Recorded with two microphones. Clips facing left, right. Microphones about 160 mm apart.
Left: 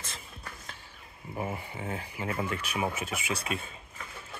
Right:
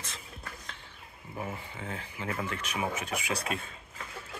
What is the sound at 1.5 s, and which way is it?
Speech, 15° left (ahead or behind).